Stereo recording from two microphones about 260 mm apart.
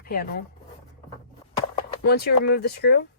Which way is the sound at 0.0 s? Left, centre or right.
Left.